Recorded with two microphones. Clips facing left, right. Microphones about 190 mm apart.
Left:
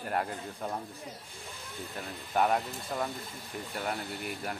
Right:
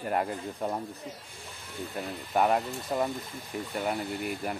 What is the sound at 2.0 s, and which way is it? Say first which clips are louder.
Speech: right 2 dB; centre (ahead or behind).